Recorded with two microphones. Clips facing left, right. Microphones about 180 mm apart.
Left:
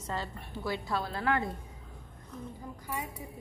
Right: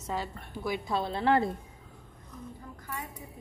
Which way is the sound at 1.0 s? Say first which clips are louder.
Right 7 dB; 25° right (ahead or behind).